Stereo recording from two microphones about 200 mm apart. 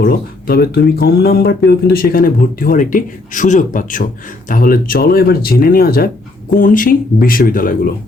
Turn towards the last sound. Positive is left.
turn(degrees=45)  # may be behind; listen again after turning